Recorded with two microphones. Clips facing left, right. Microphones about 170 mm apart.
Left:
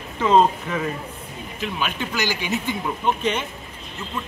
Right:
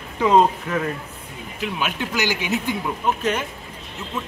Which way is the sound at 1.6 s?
15° right (ahead or behind).